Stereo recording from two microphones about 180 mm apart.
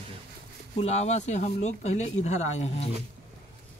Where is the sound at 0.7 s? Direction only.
40° left (ahead or behind).